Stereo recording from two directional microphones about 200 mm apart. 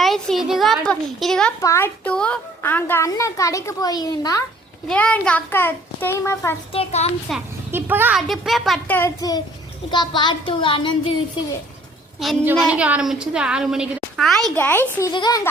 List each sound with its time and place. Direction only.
0.0 s a child's voice: centre (ahead or behind); by 4.4 s 20° left (ahead or behind)
4.9 s a child's voice: 5° left (ahead or behind)
6.7 s a child's voice: 30° left (ahead or behind)
7.3 s a woman's voice: centre (ahead or behind)
7.7 s a woman's voice: 10° right (ahead or behind); by 10.9 s 25° left (ahead or behind)
12.2 s a woman's voice: 5° right (ahead or behind)
15.0 s a woman's voice: 20° left (ahead or behind)